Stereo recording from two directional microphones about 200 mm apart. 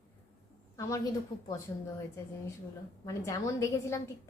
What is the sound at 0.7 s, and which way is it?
A woman's voice, 15° left (ahead or behind).